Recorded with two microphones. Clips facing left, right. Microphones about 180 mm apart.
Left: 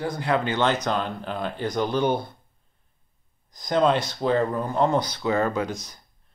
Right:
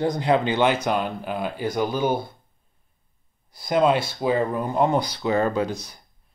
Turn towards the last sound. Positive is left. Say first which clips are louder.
# right 2 dB
turn(degrees=-35)  # may be behind; listen again after turning